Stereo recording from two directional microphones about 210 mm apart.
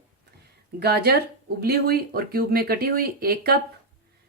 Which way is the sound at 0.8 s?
50° right (ahead or behind).